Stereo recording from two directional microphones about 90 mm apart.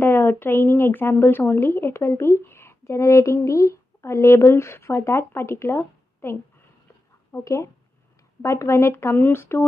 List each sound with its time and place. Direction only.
0.0 s speech: 25° left (ahead or behind)
7.3 s speech: 35° left (ahead or behind)